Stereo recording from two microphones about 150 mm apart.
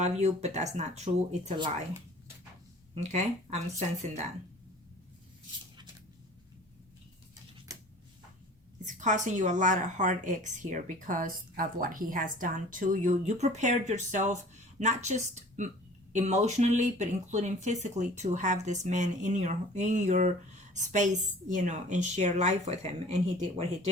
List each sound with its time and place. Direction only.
0.0 s speech: 50° right (ahead or behind)
2.9 s speech: 50° right (ahead or behind)
8.8 s a woman's voice: 55° right (ahead or behind)